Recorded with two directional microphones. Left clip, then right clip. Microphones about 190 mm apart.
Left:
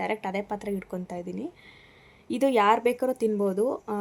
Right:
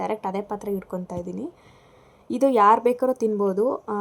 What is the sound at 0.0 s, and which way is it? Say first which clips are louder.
Speech: right 3 dB; 10° right (ahead or behind).